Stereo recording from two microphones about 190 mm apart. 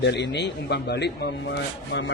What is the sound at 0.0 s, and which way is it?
Speech, 65° left (ahead or behind).